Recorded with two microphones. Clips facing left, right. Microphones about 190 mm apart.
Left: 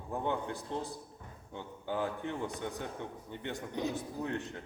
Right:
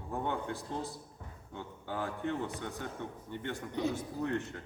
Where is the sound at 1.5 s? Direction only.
15° left (ahead or behind).